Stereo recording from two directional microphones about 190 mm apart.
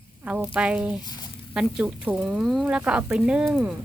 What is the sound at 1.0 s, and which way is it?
Speech, 20° left (ahead or behind).